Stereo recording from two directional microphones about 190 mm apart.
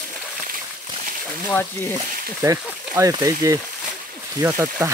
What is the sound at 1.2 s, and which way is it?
Speech, 10° left (ahead or behind).